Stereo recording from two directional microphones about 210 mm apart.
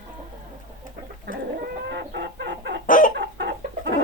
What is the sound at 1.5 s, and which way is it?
Chicken, 50° right (ahead or behind).